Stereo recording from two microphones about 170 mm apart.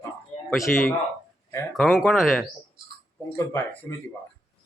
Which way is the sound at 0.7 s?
55° left (ahead or behind).